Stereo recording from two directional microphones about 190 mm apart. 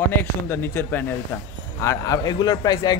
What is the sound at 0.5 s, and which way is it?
A man's voice, 10° left (ahead or behind).